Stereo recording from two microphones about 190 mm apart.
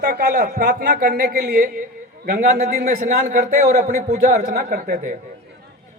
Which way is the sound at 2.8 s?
40° right (ahead or behind).